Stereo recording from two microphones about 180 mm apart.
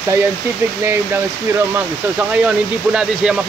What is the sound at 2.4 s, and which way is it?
Speech, 5° right (ahead or behind).